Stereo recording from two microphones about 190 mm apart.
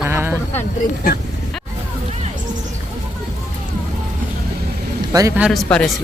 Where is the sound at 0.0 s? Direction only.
10° right (ahead or behind).